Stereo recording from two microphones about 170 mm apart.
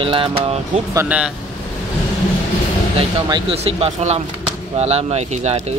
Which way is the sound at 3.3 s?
35° right (ahead or behind).